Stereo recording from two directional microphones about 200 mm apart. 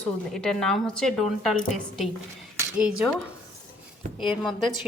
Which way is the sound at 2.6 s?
5° right (ahead or behind).